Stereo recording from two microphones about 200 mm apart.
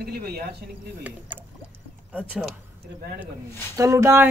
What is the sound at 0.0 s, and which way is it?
Speech, 50° right (ahead or behind).